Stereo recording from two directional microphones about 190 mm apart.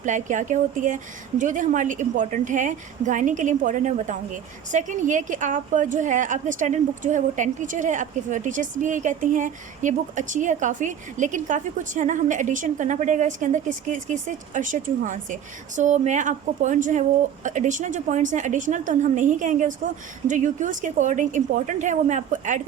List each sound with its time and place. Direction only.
0.0 s a woman's voice: 40° right (ahead or behind)